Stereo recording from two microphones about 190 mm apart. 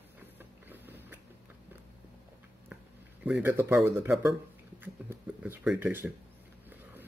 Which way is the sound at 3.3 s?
10° right (ahead or behind).